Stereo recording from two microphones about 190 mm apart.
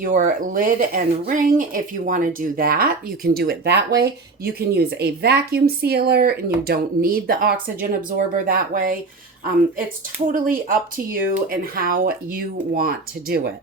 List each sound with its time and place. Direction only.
0.0 s speech: 45° right (ahead or behind)
10.2 s speech: 45° right (ahead or behind)